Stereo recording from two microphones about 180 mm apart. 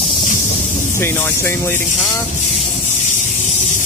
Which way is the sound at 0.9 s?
15° left (ahead or behind).